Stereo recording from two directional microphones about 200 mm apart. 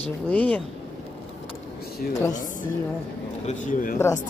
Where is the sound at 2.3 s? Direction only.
40° left (ahead or behind).